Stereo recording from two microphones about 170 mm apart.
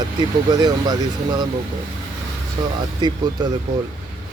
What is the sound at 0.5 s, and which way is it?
Speech, 25° right (ahead or behind).